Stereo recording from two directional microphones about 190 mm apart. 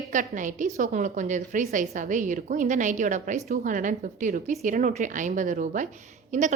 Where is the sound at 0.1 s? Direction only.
40° right (ahead or behind).